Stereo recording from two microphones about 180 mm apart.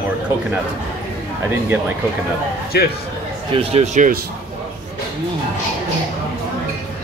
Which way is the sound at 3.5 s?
35° right (ahead or behind).